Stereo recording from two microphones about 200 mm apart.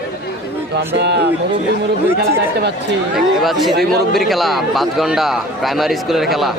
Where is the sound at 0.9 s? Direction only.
60° right (ahead or behind).